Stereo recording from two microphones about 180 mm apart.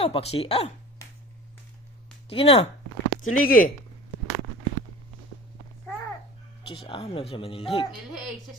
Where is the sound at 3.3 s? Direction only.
50° left (ahead or behind).